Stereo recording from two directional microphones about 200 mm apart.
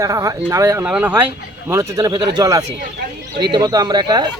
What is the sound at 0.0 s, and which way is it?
Speech, 15° right (ahead or behind).